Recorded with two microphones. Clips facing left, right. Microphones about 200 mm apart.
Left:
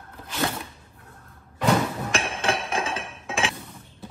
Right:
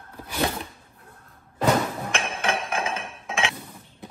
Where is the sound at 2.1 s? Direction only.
30° left (ahead or behind).